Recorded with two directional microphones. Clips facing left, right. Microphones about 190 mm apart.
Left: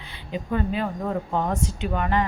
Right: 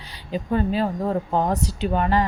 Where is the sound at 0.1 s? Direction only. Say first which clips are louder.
Right 3 dB; 35° right (ahead or behind).